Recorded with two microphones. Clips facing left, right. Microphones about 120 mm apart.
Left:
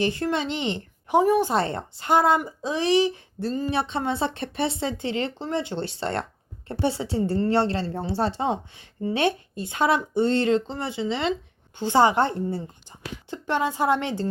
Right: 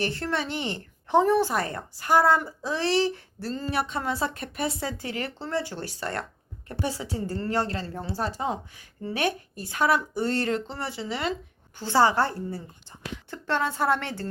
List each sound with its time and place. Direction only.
0.0 s a woman's voice: 15° left (ahead or behind)